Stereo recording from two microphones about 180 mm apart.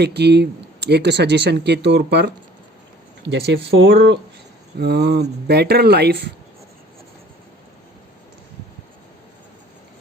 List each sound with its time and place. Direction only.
0.0 s speech: 65° right (ahead or behind)